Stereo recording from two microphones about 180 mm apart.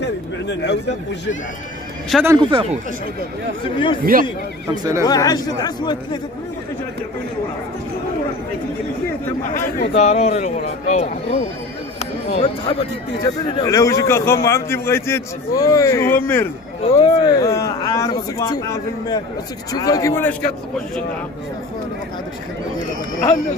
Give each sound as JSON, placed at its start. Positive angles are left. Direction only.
{"t": 0.7, "sound": "speech", "side_deg": 70}
{"t": 2.1, "sound": "speech", "side_deg": 0}
{"t": 2.5, "sound": "speech", "side_deg": -35}
{"t": 3.6, "sound": "speech", "side_deg": 25}
{"t": 4.0, "sound": "speech", "side_deg": -50}
{"t": 5.0, "sound": "speech", "side_deg": 20}
{"t": 9.9, "sound": "speech", "side_deg": 40}
{"t": 12.0, "sound": "a sound", "side_deg": 35}
{"t": 13.2, "sound": "speech", "side_deg": 25}
{"t": 13.7, "sound": "a man's voice", "side_deg": 15}
{"t": 16.8, "sound": "a man's voice", "side_deg": 25}